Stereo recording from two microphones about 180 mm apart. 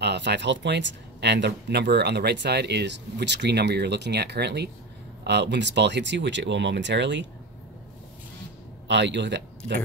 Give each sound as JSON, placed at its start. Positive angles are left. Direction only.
{"t": 0.0, "sound": "speech", "side_deg": -70}
{"t": 8.8, "sound": "speech", "side_deg": -80}